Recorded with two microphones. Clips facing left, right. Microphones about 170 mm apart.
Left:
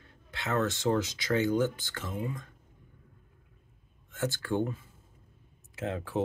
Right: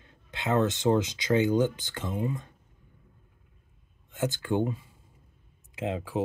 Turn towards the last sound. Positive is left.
turn(degrees=-10)  # may be behind; listen again after turning